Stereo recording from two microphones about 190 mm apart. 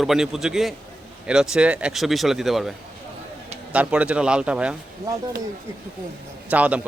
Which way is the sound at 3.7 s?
5° right (ahead or behind).